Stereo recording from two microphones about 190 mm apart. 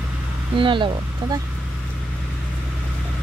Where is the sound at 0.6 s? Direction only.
25° right (ahead or behind).